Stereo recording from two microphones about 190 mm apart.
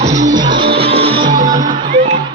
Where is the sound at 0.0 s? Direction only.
40° right (ahead or behind).